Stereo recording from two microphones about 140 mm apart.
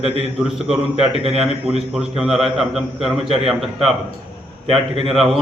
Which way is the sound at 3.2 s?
40° right (ahead or behind).